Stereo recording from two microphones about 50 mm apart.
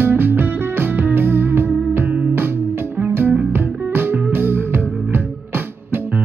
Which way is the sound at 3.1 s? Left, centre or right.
Right.